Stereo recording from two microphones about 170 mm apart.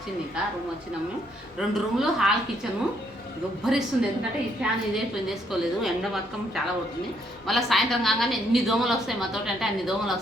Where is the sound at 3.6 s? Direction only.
5° right (ahead or behind).